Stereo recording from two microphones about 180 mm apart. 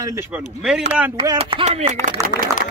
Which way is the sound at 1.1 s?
25° right (ahead or behind).